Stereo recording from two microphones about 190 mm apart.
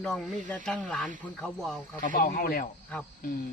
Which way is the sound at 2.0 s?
45° left (ahead or behind).